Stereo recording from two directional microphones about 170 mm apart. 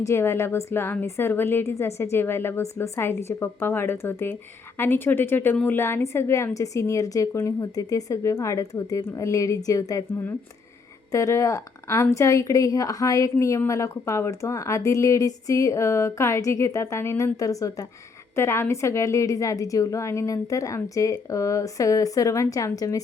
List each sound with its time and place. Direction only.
0.0 s a woman's voice: 15° left (ahead or behind)